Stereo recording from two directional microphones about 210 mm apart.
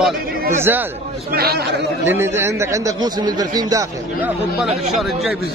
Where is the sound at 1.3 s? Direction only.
50° right (ahead or behind).